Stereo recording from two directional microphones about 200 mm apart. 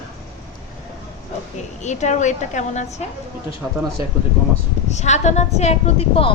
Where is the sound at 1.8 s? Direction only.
35° left (ahead or behind).